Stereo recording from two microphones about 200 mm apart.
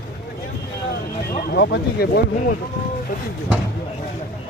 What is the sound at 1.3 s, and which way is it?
Speech, 55° left (ahead or behind).